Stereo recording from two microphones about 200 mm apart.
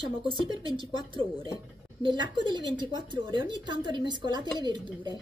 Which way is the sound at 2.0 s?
25° right (ahead or behind).